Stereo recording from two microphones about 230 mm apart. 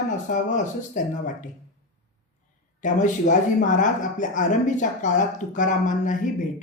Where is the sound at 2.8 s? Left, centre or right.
Left.